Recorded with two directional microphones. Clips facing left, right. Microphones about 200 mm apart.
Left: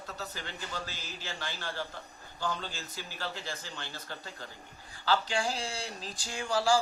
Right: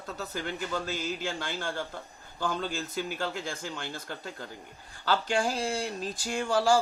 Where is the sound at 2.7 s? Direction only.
55° right (ahead or behind).